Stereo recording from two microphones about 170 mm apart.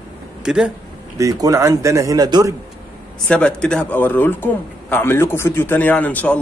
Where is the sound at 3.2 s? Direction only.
5° left (ahead or behind).